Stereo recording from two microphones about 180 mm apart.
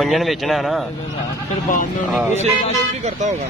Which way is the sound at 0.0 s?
Centre (ahead or behind).